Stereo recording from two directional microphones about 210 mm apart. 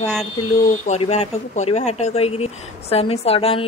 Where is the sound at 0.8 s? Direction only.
30° left (ahead or behind).